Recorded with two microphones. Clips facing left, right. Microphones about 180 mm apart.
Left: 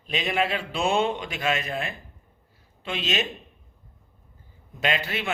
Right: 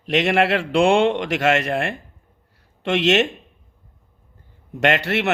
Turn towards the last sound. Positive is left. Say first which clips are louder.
# right 8 dB
turn(degrees=-75)  # may be behind; listen again after turning